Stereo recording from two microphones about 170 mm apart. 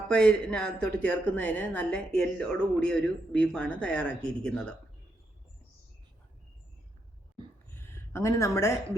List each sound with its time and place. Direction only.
0.1 s speech: 5° left (ahead or behind)
8.1 s speech: 15° left (ahead or behind)